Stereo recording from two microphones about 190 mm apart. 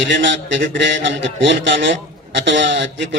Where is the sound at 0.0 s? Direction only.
70° right (ahead or behind).